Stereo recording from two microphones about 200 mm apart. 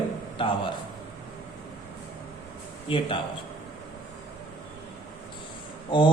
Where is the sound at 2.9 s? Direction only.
25° left (ahead or behind).